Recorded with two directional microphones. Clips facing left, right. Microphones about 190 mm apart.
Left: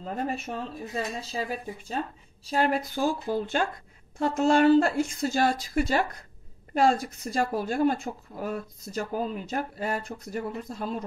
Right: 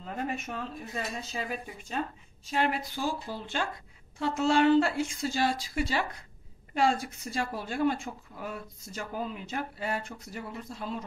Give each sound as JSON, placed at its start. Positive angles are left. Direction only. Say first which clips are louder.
{"t": 0.0, "sound": "speech", "louder": "left 3 dB", "side_deg": 35}